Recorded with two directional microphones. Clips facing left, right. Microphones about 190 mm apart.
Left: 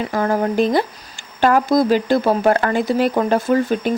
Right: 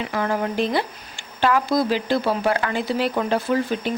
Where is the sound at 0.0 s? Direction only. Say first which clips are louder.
Left 5 dB; 40° left (ahead or behind).